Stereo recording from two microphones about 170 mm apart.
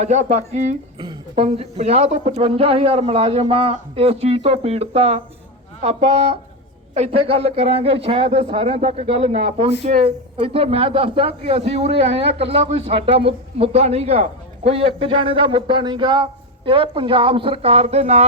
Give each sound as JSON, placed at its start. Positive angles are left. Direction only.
{"t": 0.0, "sound": "speech", "side_deg": -40}
{"t": 0.9, "sound": "speech", "side_deg": -30}